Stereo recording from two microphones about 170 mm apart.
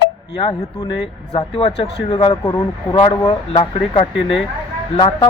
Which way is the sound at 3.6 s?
40° left (ahead or behind).